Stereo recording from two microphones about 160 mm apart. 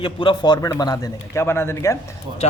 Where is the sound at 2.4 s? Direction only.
40° left (ahead or behind).